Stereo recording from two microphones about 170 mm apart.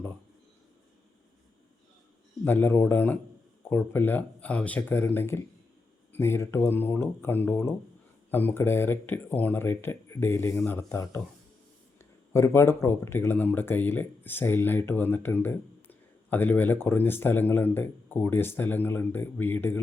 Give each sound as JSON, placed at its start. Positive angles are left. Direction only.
{"t": 2.4, "sound": "speech", "side_deg": 10}
{"t": 10.5, "sound": "speech", "side_deg": 5}
{"t": 10.8, "sound": "speech", "side_deg": 15}